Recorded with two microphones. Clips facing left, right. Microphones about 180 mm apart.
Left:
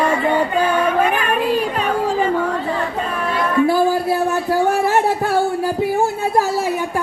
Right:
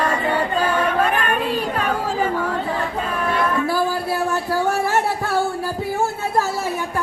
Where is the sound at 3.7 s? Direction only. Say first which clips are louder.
Left 5 dB; 20° left (ahead or behind).